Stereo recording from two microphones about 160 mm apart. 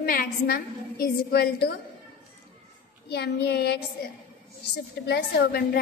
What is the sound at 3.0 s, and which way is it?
A woman's voice, 90° left.